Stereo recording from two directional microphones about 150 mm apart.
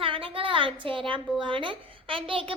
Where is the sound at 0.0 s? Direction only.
35° right (ahead or behind).